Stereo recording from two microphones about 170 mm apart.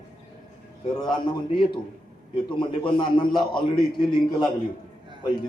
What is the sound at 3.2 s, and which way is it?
A man's voice, 25° left (ahead or behind).